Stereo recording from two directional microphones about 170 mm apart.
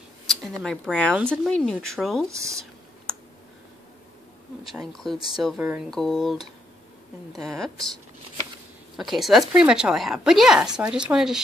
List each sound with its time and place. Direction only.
0.3 s speech: 5° left (ahead or behind)
2.2 s speech: 15° right (ahead or behind)
4.7 s speech: centre (ahead or behind)
5.6 s speech: 10° right (ahead or behind)
5.9 s speech: centre (ahead or behind)